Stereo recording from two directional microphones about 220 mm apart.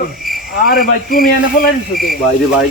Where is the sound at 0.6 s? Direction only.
40° left (ahead or behind).